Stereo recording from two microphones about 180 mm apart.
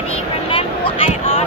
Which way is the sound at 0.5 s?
30° left (ahead or behind).